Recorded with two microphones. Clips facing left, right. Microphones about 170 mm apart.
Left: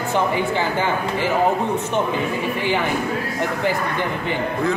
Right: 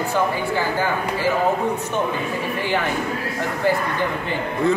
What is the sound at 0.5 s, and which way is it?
Speech, 20° left (ahead or behind).